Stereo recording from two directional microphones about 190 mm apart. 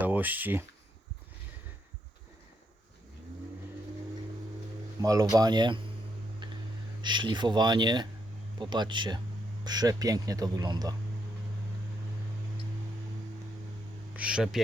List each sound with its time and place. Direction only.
0.0 s speech: 10° right (ahead or behind)
5.0 s speech: 20° right (ahead or behind)
6.4 s a sound: 25° right (ahead or behind)
7.0 s speech: 25° right (ahead or behind)
14.2 s speech: 5° right (ahead or behind)